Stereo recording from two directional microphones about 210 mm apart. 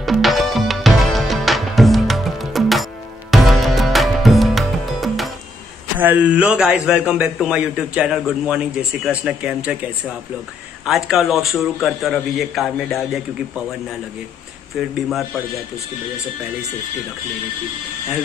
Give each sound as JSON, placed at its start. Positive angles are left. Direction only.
{"t": 0.0, "sound": "music", "side_deg": 0}
{"t": 5.9, "sound": "a man's voice", "side_deg": -10}
{"t": 15.0, "sound": "a man's voice", "side_deg": 0}